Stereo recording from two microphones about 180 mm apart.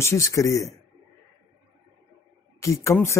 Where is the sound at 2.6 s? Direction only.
15° left (ahead or behind).